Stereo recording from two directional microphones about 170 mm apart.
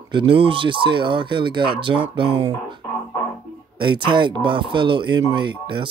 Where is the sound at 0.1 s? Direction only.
30° right (ahead or behind).